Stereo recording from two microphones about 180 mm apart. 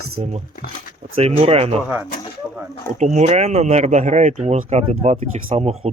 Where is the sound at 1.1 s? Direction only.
35° right (ahead or behind).